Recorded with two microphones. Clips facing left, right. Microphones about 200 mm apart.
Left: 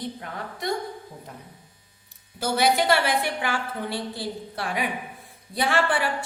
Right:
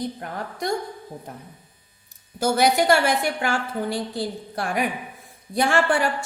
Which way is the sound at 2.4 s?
45° right (ahead or behind).